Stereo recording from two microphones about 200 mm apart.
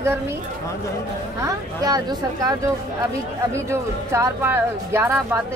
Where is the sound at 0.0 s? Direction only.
15° right (ahead or behind).